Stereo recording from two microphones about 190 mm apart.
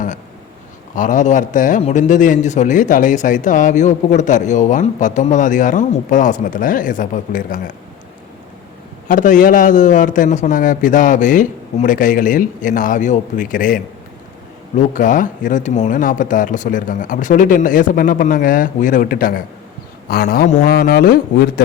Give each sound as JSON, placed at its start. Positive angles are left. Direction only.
{"t": 0.9, "sound": "a man's voice", "side_deg": 40}
{"t": 9.0, "sound": "a man's voice", "side_deg": 45}